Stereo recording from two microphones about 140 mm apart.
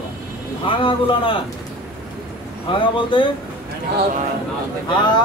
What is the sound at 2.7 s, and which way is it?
Speech, 35° left (ahead or behind).